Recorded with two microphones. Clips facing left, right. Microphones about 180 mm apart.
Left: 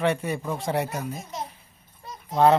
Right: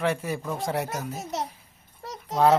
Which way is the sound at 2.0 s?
75° right (ahead or behind).